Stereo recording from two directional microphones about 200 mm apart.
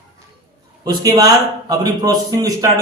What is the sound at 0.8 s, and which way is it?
A man's voice, 20° right (ahead or behind).